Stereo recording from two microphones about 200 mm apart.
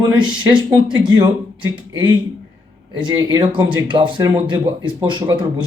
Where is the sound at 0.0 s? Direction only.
20° right (ahead or behind).